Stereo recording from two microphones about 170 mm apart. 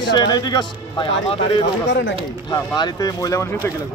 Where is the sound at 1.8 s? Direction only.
90° left.